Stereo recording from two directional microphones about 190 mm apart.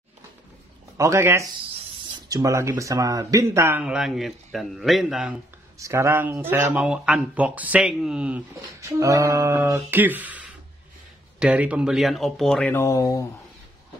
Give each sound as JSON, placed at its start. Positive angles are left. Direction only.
{"t": 0.9, "sound": "speech", "side_deg": -15}
{"t": 5.8, "sound": "speech", "side_deg": -15}
{"t": 8.5, "sound": "speech", "side_deg": -15}